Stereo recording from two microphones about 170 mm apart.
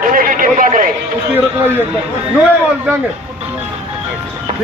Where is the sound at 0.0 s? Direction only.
55° right (ahead or behind).